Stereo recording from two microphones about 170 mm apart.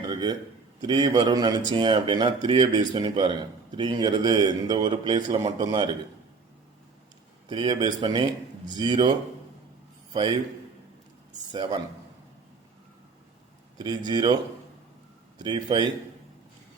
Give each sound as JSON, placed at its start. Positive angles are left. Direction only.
{"t": 0.1, "sound": "a man's voice", "side_deg": -25}
{"t": 7.4, "sound": "a man's voice", "side_deg": -25}
{"t": 11.5, "sound": "speech", "side_deg": -30}
{"t": 13.7, "sound": "speech", "side_deg": -25}
{"t": 15.4, "sound": "speech", "side_deg": -25}